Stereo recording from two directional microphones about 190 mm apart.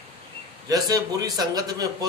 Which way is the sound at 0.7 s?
20° right (ahead or behind).